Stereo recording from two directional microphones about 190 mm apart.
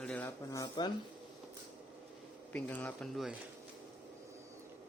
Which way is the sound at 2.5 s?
10° left (ahead or behind).